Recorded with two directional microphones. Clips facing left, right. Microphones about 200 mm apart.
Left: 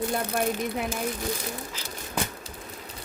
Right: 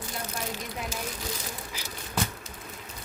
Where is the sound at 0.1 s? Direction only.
55° left (ahead or behind).